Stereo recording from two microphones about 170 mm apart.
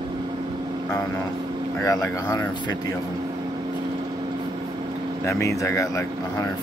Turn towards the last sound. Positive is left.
turn(degrees=20)  # may be behind; listen again after turning